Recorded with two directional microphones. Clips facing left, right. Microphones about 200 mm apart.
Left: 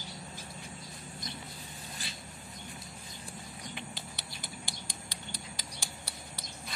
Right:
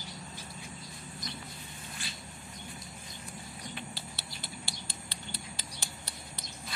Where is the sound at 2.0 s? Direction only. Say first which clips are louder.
Right 1 dB; 40° left (ahead or behind).